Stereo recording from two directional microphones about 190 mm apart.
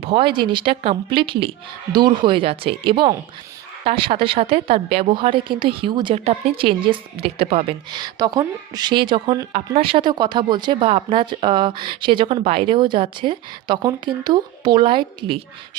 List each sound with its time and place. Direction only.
0.0 s speech: 30° right (ahead or behind)
9.5 s speech: 35° right (ahead or behind)